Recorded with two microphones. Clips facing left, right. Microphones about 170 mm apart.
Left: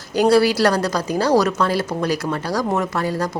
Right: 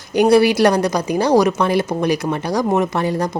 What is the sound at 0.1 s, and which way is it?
A woman's voice, 20° right (ahead or behind).